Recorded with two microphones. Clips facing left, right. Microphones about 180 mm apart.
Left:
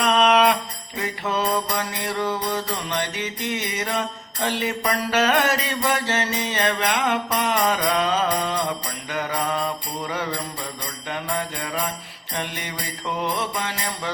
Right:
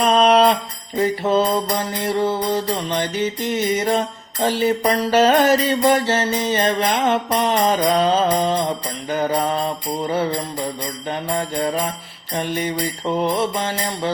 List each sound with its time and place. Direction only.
0.0 s jingle bell: 35° right (ahead or behind)
0.9 s mantra: 30° right (ahead or behind)
4.6 s music: 30° right (ahead or behind)
6.4 s mantra: 30° right (ahead or behind)